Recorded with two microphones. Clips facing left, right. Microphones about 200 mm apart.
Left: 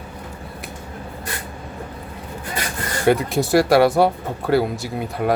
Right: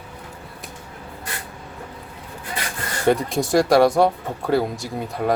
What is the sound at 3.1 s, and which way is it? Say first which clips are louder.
Speech: left 2 dB; 5° left (ahead or behind).